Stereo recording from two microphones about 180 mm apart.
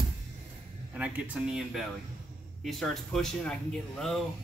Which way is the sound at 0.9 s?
5° right (ahead or behind).